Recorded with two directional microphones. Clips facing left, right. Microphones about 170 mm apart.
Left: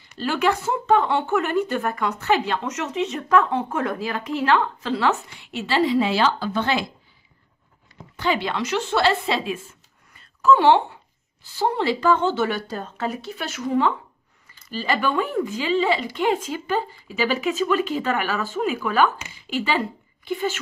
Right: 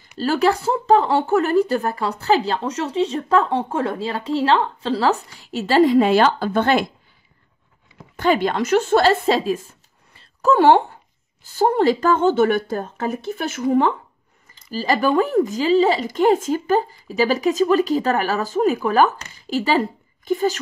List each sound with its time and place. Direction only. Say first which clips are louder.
0.2 s speech: right 4 dB; 35° right (ahead or behind)
8.2 s a woman's voice: right 5 dB; 45° right (ahead or behind)
14.7 s a woman's voice: right 5 dB; 40° right (ahead or behind)